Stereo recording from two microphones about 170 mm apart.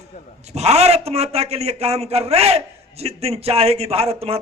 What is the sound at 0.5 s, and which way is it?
A man's voice, 40° right (ahead or behind).